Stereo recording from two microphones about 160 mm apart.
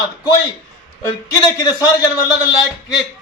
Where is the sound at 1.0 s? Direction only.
20° left (ahead or behind).